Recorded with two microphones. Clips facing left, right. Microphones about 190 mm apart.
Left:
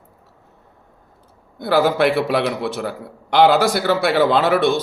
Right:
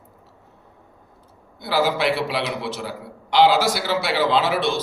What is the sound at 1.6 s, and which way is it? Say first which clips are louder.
A man's voice: left 5 dB; 50° left (ahead or behind).